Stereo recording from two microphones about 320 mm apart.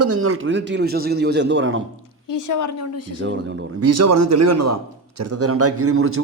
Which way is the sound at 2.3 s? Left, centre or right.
Left.